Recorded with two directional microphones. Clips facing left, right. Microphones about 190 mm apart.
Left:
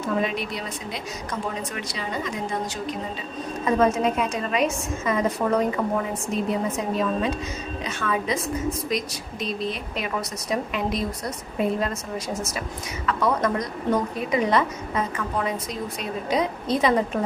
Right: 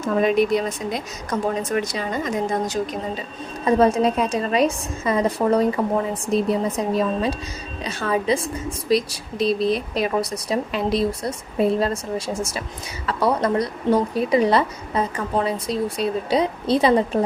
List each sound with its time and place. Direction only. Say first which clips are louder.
0.0 s speech: right 7 dB; 45° right (ahead or behind)
3.7 s a woman's voice: right 4 dB; 35° right (ahead or behind)